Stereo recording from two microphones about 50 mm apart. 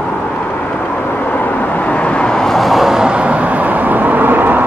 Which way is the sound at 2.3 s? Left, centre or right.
Centre.